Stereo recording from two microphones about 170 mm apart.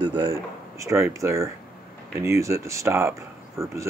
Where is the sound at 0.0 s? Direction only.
25° right (ahead or behind).